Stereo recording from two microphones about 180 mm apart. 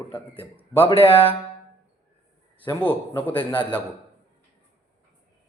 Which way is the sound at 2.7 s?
10° left (ahead or behind).